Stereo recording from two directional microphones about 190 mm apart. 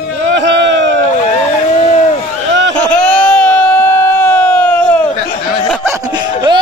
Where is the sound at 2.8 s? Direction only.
5° left (ahead or behind).